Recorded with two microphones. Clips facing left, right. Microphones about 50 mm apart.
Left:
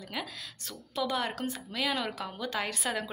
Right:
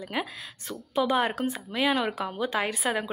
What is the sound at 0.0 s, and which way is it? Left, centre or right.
Speech, right.